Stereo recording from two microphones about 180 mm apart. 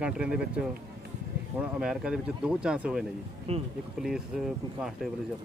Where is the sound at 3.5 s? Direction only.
35° right (ahead or behind).